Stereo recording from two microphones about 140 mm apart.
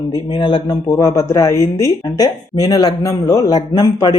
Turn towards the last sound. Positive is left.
turn(degrees=30)  # may be behind; listen again after turning